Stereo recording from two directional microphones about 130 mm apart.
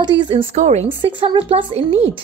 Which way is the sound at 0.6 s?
60° right (ahead or behind).